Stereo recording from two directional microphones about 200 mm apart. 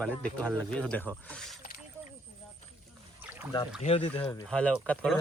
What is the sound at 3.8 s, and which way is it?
Speech, 30° left (ahead or behind).